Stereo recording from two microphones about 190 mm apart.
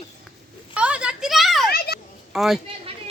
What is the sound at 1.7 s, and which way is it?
Children playing, 55° left (ahead or behind).